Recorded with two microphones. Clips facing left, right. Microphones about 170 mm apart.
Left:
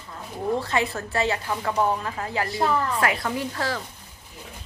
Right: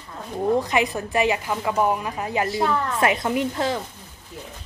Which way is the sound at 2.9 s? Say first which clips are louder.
Right 4 dB; 20° right (ahead or behind).